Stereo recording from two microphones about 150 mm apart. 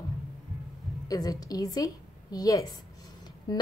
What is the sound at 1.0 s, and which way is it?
A woman's voice, 25° left (ahead or behind).